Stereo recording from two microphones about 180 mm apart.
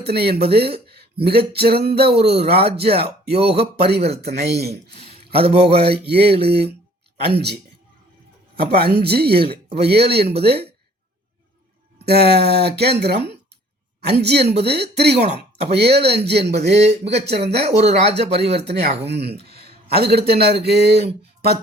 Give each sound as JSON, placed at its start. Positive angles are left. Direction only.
{"t": 0.0, "sound": "a man's voice", "side_deg": -60}
{"t": 5.4, "sound": "speech", "side_deg": -35}
{"t": 5.8, "sound": "a man's voice", "side_deg": -65}
{"t": 11.9, "sound": "a man's voice", "side_deg": -65}
{"t": 16.6, "sound": "speech", "side_deg": -35}
{"t": 18.5, "sound": "a man's voice", "side_deg": -65}